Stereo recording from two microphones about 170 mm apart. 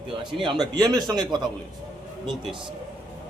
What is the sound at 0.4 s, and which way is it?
A man's voice, 25° right (ahead or behind).